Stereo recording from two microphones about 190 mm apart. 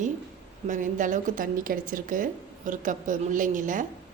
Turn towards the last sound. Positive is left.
turn(degrees=-45)  # may be behind; listen again after turning